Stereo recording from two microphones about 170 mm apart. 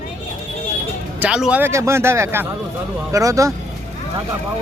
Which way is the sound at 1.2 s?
5° right (ahead or behind).